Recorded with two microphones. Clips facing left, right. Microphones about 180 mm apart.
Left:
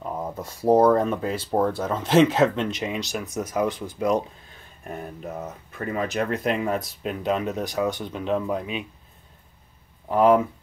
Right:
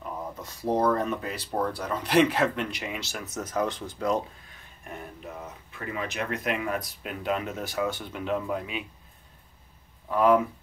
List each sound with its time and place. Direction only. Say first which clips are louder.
0.2 s speech: left 6 dB; 35° left (ahead or behind); by 4.2 s 15° left (ahead or behind)
4.8 s speech: left 6 dB; 45° left (ahead or behind); by 8.8 s 20° left (ahead or behind)
10.0 s speech: left 4 dB; 30° left (ahead or behind)